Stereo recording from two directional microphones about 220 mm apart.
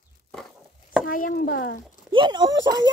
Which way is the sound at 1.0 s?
40° left (ahead or behind).